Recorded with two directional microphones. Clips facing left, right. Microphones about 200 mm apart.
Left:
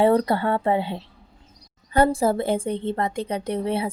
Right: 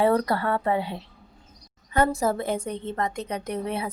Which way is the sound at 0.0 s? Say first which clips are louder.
Left 3 dB; 30° left (ahead or behind).